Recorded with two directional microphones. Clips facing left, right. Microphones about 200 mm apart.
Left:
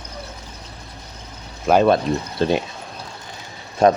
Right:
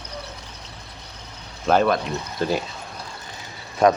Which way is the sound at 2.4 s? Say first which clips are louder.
Left 3 dB; 25° left (ahead or behind).